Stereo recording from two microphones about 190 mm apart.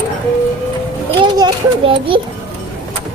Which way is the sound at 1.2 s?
20° right (ahead or behind).